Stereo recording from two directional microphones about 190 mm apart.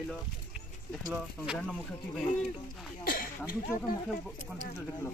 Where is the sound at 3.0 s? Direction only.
50° left (ahead or behind).